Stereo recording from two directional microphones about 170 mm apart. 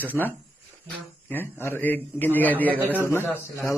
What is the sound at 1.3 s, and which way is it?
A man's voice, 10° left (ahead or behind).